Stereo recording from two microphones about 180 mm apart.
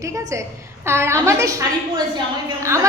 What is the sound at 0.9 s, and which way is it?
Speech, 15° right (ahead or behind).